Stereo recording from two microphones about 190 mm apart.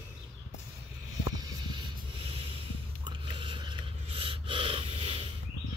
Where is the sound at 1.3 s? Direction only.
20° right (ahead or behind).